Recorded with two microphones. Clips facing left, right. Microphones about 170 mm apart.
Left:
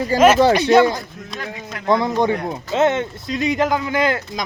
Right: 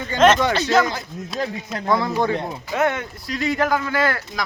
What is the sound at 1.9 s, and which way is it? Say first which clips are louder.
Speech: left 3 dB; 20° left (ahead or behind).